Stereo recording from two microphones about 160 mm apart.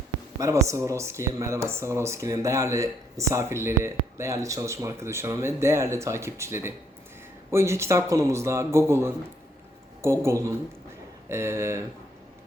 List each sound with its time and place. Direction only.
0.3 s speech: 20° right (ahead or behind)